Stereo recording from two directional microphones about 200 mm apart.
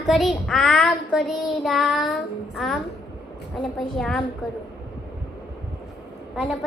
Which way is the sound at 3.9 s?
5° left (ahead or behind).